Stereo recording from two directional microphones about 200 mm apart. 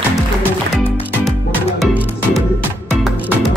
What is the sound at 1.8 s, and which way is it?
Music, centre (ahead or behind).